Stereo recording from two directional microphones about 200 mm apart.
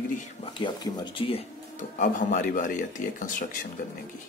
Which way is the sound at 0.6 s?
25° left (ahead or behind).